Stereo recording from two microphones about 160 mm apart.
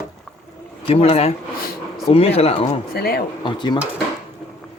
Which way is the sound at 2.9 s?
75° left (ahead or behind).